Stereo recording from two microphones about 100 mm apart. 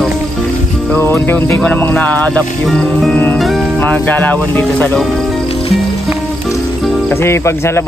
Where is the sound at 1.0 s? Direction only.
20° left (ahead or behind).